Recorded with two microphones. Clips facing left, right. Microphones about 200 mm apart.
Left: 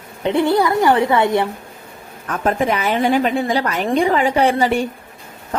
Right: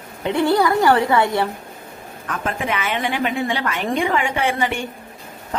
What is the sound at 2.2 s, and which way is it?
A woman's voice, 40° left (ahead or behind).